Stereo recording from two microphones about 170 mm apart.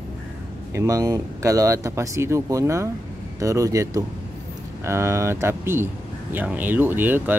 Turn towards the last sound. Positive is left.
turn(degrees=-10)  # may be behind; listen again after turning